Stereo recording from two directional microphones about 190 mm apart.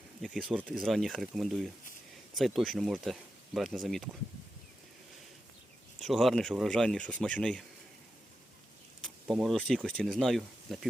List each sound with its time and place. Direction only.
0.2 s speech: 5° left (ahead or behind)
6.0 s speech: centre (ahead or behind)
9.2 s speech: centre (ahead or behind)